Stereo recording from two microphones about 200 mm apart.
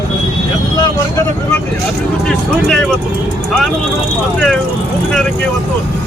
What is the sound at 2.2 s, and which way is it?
Vehicle, 5° left (ahead or behind).